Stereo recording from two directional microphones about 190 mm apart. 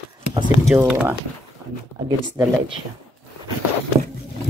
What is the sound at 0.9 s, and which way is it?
Speech, 5° right (ahead or behind).